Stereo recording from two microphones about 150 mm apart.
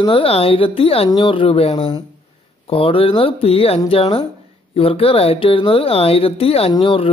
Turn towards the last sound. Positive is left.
turn(degrees=35)  # may be behind; listen again after turning